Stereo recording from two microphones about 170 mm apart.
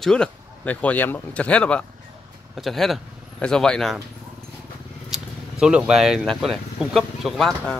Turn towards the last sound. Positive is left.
turn(degrees=5)  # may be behind; listen again after turning